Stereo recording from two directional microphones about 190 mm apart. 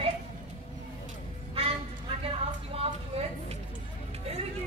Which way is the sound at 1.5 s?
30° right (ahead or behind).